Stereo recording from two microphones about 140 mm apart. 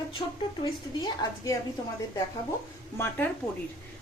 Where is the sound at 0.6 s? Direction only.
30° left (ahead or behind).